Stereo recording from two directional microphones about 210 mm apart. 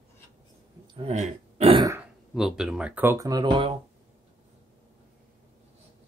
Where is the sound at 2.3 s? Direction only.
Centre (ahead or behind); by 3.7 s 25° right (ahead or behind).